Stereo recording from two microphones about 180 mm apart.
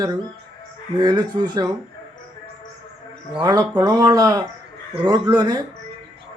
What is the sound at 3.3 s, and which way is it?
A man's voice, 25° right (ahead or behind).